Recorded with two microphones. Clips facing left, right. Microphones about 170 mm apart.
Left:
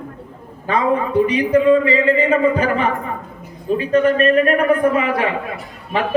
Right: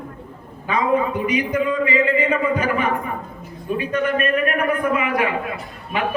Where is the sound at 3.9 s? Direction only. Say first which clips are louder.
Left 7 dB; 35° left (ahead or behind).